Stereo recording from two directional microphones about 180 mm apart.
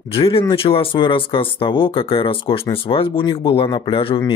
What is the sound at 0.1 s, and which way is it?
Speech, 30° left (ahead or behind).